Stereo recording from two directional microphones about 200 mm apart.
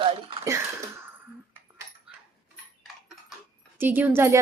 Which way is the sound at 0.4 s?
15° right (ahead or behind).